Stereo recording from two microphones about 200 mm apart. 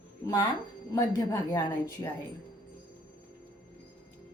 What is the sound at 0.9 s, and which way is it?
A woman's voice, 15° left (ahead or behind).